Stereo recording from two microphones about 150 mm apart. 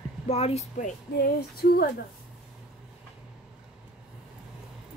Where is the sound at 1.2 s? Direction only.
90° left.